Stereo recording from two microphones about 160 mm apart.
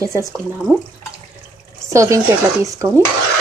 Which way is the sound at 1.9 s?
20° right (ahead or behind).